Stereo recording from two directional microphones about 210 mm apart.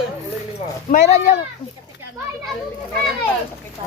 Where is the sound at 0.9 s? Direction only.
35° left (ahead or behind).